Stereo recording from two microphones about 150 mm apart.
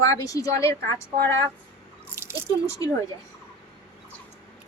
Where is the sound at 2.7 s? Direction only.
20° left (ahead or behind).